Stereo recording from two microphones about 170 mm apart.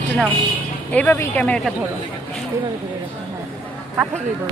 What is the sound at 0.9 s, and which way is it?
Speech, 10° left (ahead or behind).